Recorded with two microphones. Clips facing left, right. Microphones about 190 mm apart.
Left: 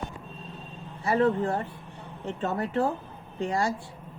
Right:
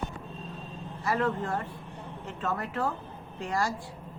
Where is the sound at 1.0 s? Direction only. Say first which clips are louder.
Left 5 dB; 30° left (ahead or behind).